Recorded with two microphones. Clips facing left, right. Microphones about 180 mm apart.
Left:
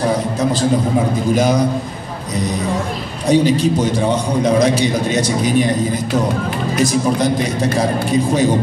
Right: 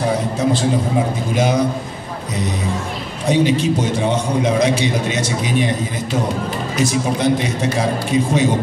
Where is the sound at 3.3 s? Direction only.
35° left (ahead or behind).